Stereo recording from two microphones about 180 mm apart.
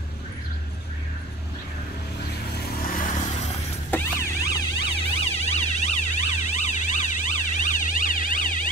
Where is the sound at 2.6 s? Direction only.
55° left (ahead or behind).